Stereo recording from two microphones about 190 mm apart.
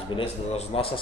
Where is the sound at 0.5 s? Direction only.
30° left (ahead or behind).